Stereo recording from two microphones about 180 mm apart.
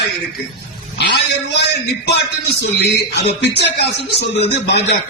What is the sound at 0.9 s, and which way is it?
A man's voice, 65° left (ahead or behind).